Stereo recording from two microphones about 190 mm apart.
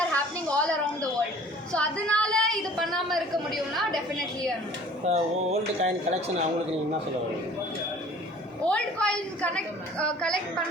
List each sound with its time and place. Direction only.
0.1 s a sound: 5° left (ahead or behind)
5.0 s speech: 35° right (ahead or behind)
8.7 s a woman's voice: 5° left (ahead or behind)